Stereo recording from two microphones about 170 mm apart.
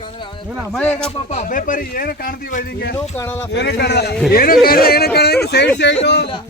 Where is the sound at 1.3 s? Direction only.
50° left (ahead or behind).